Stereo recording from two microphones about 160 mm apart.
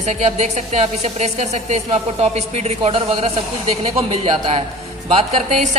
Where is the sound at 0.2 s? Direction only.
45° right (ahead or behind).